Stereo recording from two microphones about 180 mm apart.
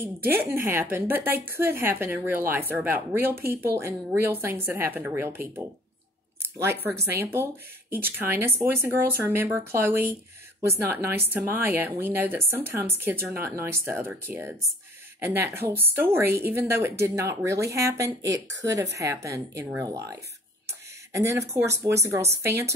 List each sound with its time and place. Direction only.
0.0 s a woman's voice: 10° right (ahead or behind)